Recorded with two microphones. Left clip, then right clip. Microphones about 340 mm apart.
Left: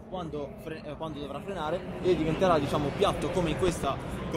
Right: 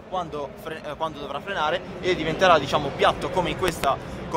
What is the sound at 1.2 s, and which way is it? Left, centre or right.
Speech, right.